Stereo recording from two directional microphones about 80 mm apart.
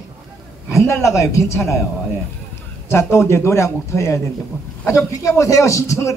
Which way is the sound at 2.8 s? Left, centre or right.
Left.